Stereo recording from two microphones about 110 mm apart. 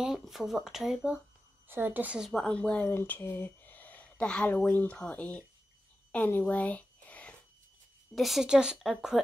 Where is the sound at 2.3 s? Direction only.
5° left (ahead or behind).